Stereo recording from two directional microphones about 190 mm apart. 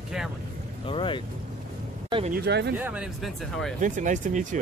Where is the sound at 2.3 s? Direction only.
60° right (ahead or behind).